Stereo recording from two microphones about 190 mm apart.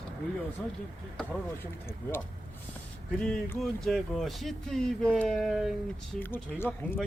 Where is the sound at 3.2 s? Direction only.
10° left (ahead or behind).